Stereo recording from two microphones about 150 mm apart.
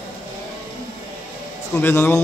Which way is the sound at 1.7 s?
15° left (ahead or behind).